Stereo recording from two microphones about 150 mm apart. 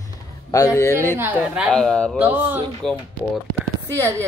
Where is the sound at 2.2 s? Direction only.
15° right (ahead or behind).